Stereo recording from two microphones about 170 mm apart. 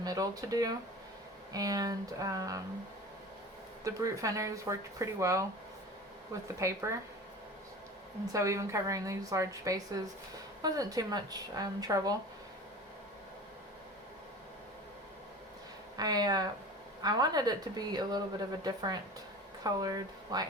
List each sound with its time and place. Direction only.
0.0 s a woman's voice: 20° right (ahead or behind)
3.8 s a woman's voice: 20° right (ahead or behind)
6.6 s speech: 15° right (ahead or behind)
8.3 s a woman's voice: 20° right (ahead or behind)
16.0 s a woman's voice: 20° right (ahead or behind)